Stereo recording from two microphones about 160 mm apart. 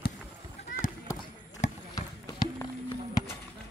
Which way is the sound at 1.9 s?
20° left (ahead or behind).